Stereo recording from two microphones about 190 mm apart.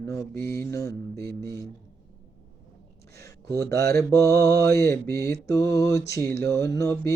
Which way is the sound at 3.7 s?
15° left (ahead or behind).